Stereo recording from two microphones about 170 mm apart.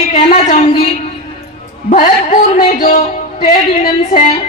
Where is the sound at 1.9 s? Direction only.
50° left (ahead or behind).